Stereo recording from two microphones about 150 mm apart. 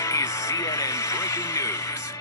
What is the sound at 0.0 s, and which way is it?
Music, 20° left (ahead or behind).